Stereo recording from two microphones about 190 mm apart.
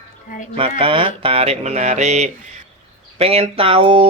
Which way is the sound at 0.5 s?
30° right (ahead or behind).